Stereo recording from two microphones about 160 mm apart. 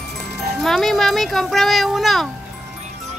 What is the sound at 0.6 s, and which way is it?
Speech, centre (ahead or behind).